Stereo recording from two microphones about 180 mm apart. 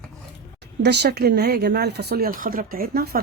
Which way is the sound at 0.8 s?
65° right (ahead or behind).